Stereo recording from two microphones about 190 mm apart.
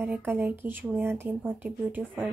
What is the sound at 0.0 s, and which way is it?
Speech, 10° right (ahead or behind).